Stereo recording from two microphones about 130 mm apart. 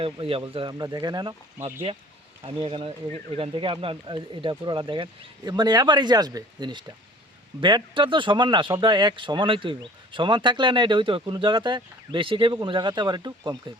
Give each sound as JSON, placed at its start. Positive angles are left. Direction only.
{"t": 0.0, "sound": "speech", "side_deg": -45}
{"t": 1.6, "sound": "speech", "side_deg": -15}
{"t": 2.4, "sound": "speech", "side_deg": -45}